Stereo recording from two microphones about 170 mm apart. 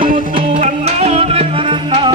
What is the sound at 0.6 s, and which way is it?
Music, 40° right (ahead or behind).